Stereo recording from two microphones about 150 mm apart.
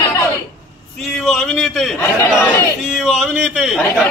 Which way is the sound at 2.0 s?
15° left (ahead or behind).